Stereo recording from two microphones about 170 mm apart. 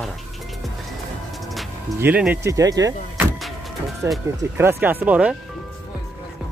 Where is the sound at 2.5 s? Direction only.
20° right (ahead or behind).